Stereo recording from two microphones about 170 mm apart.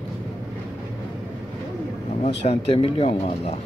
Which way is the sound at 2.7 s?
35° left (ahead or behind).